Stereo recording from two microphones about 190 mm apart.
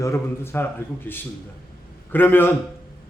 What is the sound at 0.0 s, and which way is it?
Speech, 15° left (ahead or behind).